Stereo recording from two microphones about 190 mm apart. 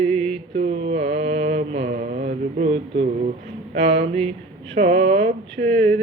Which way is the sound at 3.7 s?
35° right (ahead or behind).